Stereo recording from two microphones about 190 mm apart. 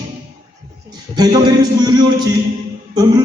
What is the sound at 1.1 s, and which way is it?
A man's voice, 20° right (ahead or behind).